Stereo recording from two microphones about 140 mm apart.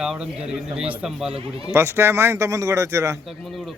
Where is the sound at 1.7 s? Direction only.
20° right (ahead or behind).